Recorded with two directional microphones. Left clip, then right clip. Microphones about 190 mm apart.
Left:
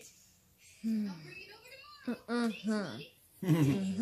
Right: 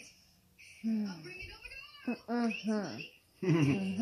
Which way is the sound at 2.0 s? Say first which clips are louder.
Even; 40° left (ahead or behind).